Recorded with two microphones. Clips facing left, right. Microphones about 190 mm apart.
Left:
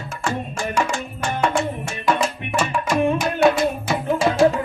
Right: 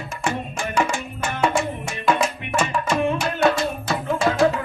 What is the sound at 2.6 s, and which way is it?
Music, 5° left (ahead or behind).